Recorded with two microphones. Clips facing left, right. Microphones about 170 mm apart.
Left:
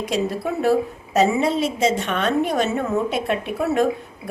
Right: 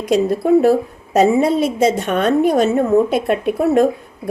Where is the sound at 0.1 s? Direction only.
45° right (ahead or behind).